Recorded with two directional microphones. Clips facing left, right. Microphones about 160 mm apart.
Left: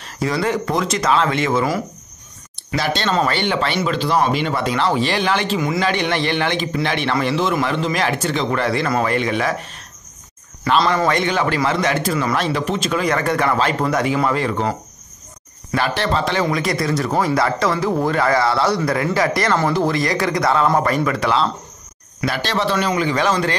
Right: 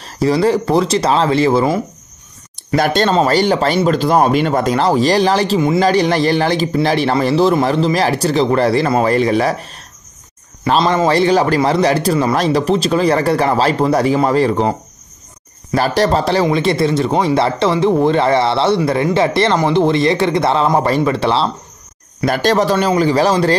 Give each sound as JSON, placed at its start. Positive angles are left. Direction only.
{"t": 0.0, "sound": "a man's voice", "side_deg": -35}
{"t": 2.7, "sound": "speech", "side_deg": -50}
{"t": 3.1, "sound": "a man's voice", "side_deg": -35}
{"t": 10.8, "sound": "a man's voice", "side_deg": -25}
{"t": 16.4, "sound": "speech", "side_deg": -25}
{"t": 22.2, "sound": "a man's voice", "side_deg": -45}